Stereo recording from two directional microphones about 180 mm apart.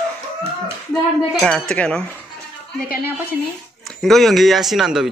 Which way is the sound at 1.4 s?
5° left (ahead or behind).